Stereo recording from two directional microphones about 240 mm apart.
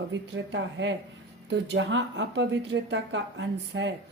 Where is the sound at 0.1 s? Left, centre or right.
Right.